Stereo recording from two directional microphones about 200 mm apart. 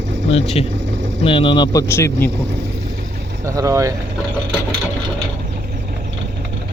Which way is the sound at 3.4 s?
15° right (ahead or behind).